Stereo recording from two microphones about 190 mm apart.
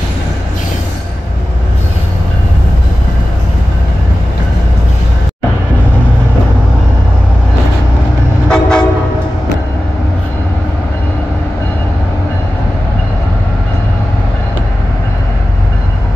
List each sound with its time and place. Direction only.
8.5 s train: 5° left (ahead or behind)